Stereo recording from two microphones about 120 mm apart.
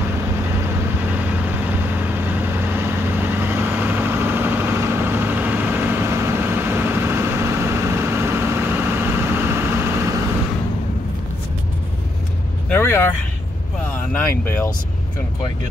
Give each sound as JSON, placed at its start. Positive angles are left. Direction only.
{"t": 1.7, "sound": "vehicle", "side_deg": -15}
{"t": 12.6, "sound": "vehicle", "side_deg": 15}
{"t": 14.1, "sound": "speech", "side_deg": 15}